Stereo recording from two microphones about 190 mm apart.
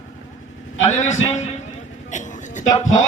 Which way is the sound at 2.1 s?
40° left (ahead or behind).